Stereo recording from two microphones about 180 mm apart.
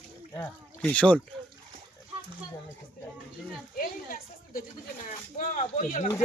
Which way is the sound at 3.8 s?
55° left (ahead or behind).